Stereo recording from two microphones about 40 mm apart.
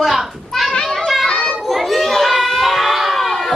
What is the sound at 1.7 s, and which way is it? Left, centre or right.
Children playing, centre.